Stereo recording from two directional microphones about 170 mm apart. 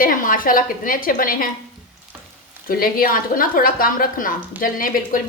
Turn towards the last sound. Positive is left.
turn(degrees=55)  # may be behind; listen again after turning